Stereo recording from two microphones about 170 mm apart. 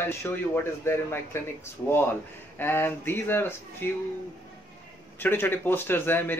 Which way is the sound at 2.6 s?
15° left (ahead or behind).